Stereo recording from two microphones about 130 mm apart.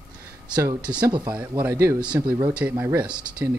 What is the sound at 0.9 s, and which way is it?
Speech, 35° right (ahead or behind).